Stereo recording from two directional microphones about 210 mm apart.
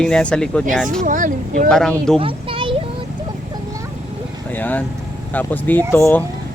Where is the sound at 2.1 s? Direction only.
25° right (ahead or behind).